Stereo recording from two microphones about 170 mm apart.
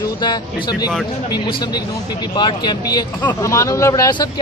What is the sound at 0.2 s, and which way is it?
Speech, 25° left (ahead or behind).